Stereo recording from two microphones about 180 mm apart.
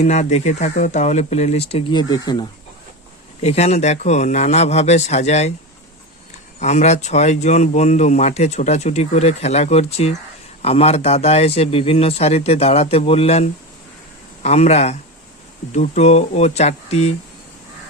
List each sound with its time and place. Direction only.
0.0 s speech: 40° left (ahead or behind); by 2.5 s 25° left (ahead or behind)
3.4 s speech: 35° left (ahead or behind)
6.6 s speech: 40° left (ahead or behind)
14.4 s speech: 40° left (ahead or behind)